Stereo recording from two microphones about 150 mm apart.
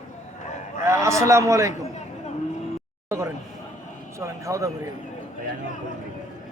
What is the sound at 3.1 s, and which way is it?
Speech, 20° right (ahead or behind).